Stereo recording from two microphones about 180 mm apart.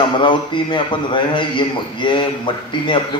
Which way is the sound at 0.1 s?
25° left (ahead or behind).